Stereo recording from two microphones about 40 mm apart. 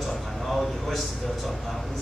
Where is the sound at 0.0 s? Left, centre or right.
Centre.